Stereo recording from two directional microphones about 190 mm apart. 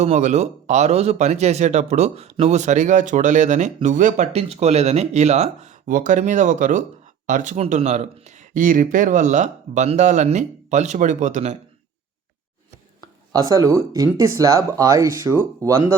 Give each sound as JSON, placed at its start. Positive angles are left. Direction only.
{"t": 0.0, "sound": "speech", "side_deg": -35}
{"t": 13.3, "sound": "speech", "side_deg": -20}